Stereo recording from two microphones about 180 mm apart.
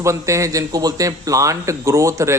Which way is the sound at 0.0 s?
15° right (ahead or behind).